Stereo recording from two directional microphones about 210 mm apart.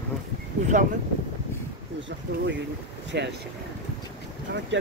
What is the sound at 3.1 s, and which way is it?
Speech, 50° right (ahead or behind).